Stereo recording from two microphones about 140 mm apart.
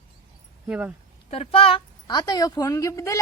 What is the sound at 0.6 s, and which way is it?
Speech, 10° right (ahead or behind).